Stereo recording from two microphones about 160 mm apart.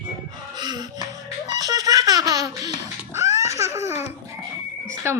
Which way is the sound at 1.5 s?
25° right (ahead or behind).